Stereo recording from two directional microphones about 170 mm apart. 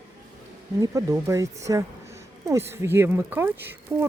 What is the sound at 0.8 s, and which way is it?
Speech, 20° right (ahead or behind).